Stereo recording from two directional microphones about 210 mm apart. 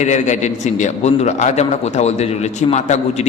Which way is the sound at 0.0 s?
35° left (ahead or behind).